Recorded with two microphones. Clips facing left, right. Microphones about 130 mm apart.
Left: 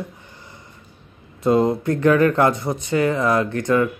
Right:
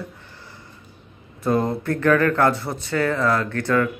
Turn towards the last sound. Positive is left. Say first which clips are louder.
# left 3 dB
turn(degrees=15)  # may be behind; listen again after turning